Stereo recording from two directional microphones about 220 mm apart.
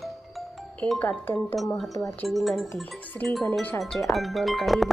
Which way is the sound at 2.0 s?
Centre (ahead or behind).